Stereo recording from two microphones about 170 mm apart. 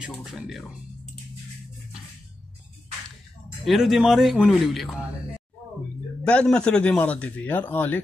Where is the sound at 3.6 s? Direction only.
Centre (ahead or behind).